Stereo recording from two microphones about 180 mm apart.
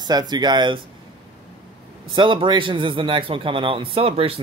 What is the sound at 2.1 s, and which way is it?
A man's voice, 25° right (ahead or behind).